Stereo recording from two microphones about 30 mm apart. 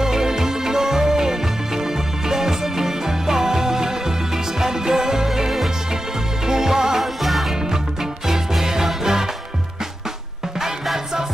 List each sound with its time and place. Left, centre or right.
0.0 s music: centre
7.0 s music: centre
8.3 s music: centre